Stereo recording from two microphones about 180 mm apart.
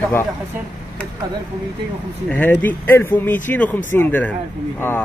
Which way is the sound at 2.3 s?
10° left (ahead or behind).